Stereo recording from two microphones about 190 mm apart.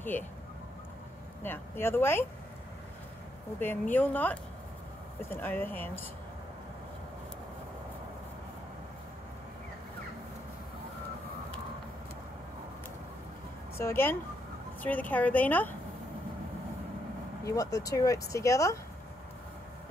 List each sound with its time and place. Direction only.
0.1 s speech: 10° left (ahead or behind)
1.4 s speech: 10° left (ahead or behind)
3.5 s speech: 10° left (ahead or behind)
13.7 s speech: 10° left (ahead or behind)
17.7 s speech: 15° left (ahead or behind)